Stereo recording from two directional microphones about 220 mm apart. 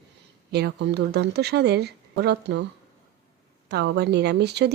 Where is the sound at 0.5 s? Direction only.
50° right (ahead or behind).